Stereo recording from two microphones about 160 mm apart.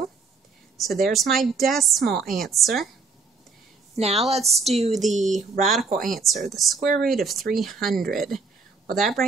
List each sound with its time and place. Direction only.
0.7 s a woman's voice: centre (ahead or behind)
3.9 s a woman's voice: 40° right (ahead or behind)
4.4 s a woman's voice: centre (ahead or behind)
4.6 s a woman's voice: 40° right (ahead or behind)
4.9 s a woman's voice: centre (ahead or behind)